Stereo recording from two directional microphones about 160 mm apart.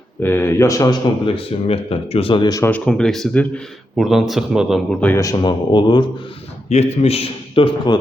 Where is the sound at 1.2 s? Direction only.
35° left (ahead or behind).